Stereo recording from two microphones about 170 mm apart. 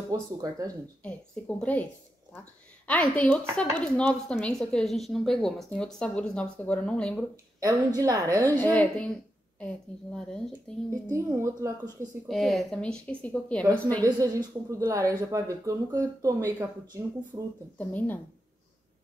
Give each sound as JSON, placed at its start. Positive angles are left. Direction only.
{"t": 0.1, "sound": "a woman's voice", "side_deg": -20}
{"t": 1.6, "sound": "speech", "side_deg": 10}
{"t": 2.9, "sound": "speech", "side_deg": 10}
{"t": 7.6, "sound": "a woman's voice", "side_deg": -20}
{"t": 8.5, "sound": "speech", "side_deg": 10}
{"t": 10.1, "sound": "speech", "side_deg": 5}
{"t": 10.9, "sound": "a woman's voice", "side_deg": -15}
{"t": 12.3, "sound": "speech", "side_deg": 0}
{"t": 14.0, "sound": "a woman's voice", "side_deg": -25}
{"t": 17.3, "sound": "a woman's voice", "side_deg": -30}
{"t": 17.7, "sound": "speech", "side_deg": 10}